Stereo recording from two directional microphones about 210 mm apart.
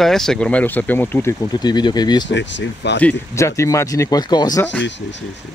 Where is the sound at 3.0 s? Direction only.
10° left (ahead or behind).